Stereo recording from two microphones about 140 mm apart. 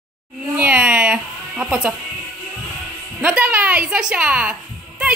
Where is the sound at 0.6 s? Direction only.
10° right (ahead or behind).